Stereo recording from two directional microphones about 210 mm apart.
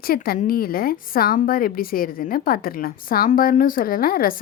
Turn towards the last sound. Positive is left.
turn(degrees=45)  # may be behind; listen again after turning